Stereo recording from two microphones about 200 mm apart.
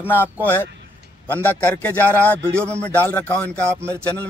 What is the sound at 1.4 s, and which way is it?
Speech, 10° left (ahead or behind).